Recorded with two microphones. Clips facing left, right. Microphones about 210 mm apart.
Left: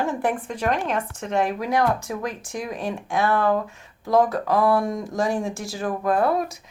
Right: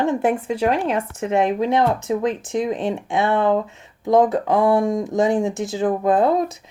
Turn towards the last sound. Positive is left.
turn(degrees=-20)  # may be behind; listen again after turning